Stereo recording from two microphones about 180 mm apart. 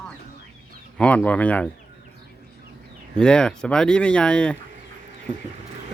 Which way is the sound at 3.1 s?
5° left (ahead or behind).